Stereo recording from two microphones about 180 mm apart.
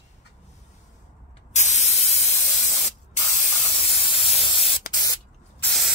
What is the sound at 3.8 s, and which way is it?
Spray, 30° left (ahead or behind).